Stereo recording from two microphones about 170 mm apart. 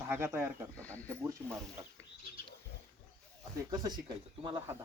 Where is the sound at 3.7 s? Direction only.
25° right (ahead or behind).